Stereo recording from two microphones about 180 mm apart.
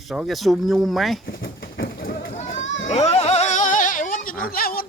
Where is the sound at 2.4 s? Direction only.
90° left.